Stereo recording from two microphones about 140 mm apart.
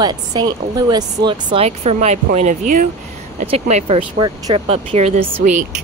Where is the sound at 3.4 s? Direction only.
50° right (ahead or behind).